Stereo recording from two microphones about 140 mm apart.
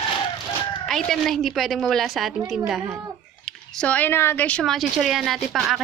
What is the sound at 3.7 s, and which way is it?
A woman's voice, 10° left (ahead or behind).